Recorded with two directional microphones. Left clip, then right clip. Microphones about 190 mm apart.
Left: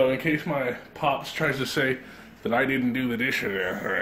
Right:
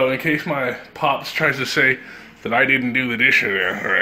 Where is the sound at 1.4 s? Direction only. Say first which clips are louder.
Right 9 dB; 10° right (ahead or behind).